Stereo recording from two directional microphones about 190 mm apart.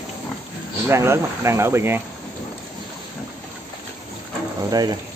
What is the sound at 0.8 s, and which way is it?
Speech, 15° right (ahead or behind).